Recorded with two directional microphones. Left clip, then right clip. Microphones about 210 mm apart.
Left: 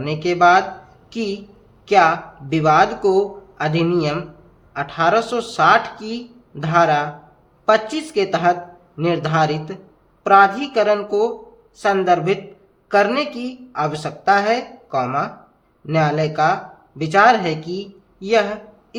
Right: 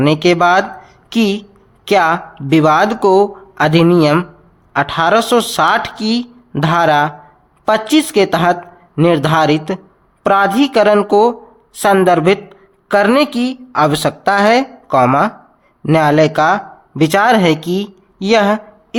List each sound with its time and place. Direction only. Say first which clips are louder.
0.0 s a woman's voice: right 4 dB; 45° right (ahead or behind)